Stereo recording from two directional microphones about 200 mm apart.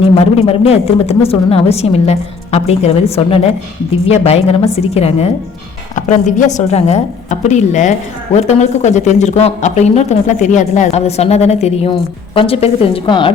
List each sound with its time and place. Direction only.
0.4 s speech: 30° left (ahead or behind)